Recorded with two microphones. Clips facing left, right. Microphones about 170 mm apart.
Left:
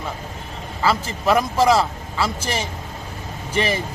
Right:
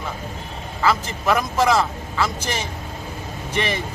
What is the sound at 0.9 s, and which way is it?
Speech, 30° left (ahead or behind).